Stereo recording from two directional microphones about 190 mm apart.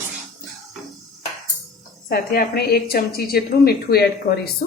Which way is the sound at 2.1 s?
55° left (ahead or behind).